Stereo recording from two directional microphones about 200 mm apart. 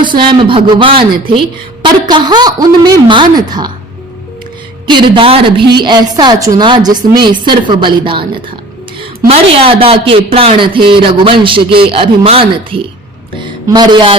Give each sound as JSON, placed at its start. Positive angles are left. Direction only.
{"t": 0.0, "sound": "speech", "side_deg": -25}
{"t": 4.9, "sound": "a woman's voice", "side_deg": -25}